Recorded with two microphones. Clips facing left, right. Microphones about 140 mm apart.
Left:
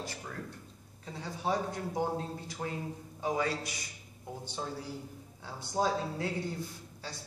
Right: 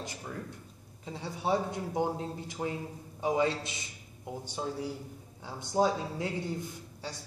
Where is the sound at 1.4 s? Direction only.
15° right (ahead or behind).